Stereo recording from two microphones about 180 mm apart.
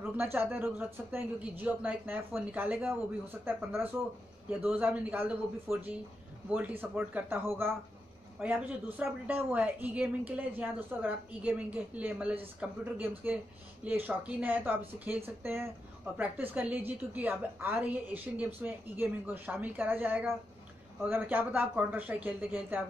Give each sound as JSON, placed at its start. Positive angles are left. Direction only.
{"t": 0.0, "sound": "a woman's voice", "side_deg": -10}